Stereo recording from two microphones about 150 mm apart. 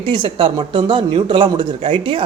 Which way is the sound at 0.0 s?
35° right (ahead or behind).